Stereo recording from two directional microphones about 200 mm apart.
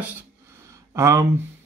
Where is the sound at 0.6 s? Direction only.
15° right (ahead or behind).